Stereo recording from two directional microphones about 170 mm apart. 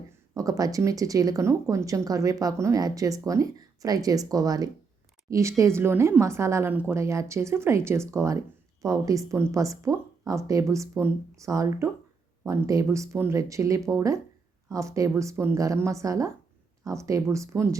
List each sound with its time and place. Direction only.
0.3 s a woman's voice: 20° right (ahead or behind)